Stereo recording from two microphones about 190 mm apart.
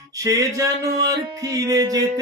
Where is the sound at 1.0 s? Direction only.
20° right (ahead or behind).